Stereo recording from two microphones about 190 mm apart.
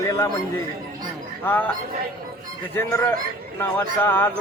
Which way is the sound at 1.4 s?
10° left (ahead or behind).